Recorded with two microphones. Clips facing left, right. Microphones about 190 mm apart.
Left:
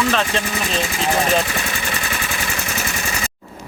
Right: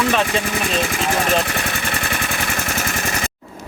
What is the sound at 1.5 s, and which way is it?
Vehicle, 55° right (ahead or behind).